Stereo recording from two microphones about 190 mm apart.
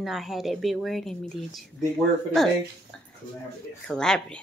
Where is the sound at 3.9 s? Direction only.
5° left (ahead or behind).